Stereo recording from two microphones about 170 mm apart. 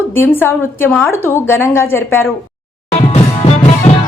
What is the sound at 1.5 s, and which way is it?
Speech, 15° left (ahead or behind).